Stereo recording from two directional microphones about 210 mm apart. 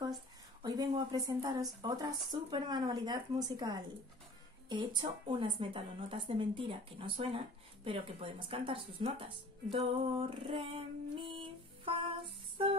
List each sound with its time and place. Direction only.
0.0 s speech: 20° right (ahead or behind)
11.1 s music: 25° right (ahead or behind)